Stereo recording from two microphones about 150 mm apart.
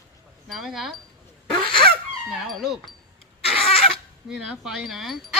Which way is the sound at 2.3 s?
Centre (ahead or behind).